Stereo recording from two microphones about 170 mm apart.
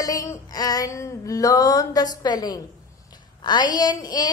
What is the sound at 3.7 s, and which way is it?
Speech, 25° left (ahead or behind).